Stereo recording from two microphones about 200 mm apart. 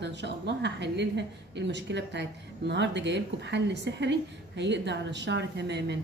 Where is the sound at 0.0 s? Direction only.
60° right (ahead or behind).